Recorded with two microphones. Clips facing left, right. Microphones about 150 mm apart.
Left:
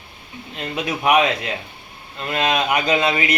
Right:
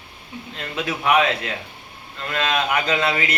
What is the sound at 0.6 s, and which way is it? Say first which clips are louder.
A man's voice: left 2 dB; 20° left (ahead or behind).